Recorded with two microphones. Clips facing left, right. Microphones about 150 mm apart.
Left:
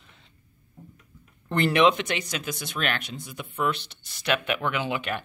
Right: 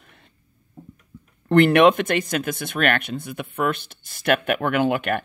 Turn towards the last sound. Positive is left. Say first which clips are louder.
# right 8 dB
turn(degrees=-55)  # may be behind; listen again after turning